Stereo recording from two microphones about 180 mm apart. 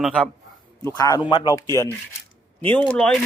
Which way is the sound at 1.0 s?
20° left (ahead or behind).